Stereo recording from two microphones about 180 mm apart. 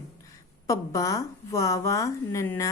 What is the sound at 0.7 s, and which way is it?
A woman's voice, 20° left (ahead or behind).